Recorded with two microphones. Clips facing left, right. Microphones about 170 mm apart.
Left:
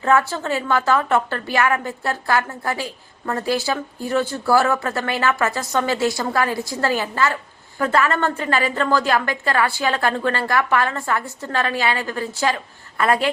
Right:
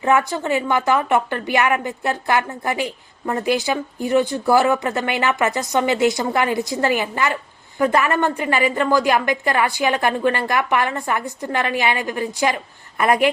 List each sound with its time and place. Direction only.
0.0 s a woman's voice: 15° right (ahead or behind)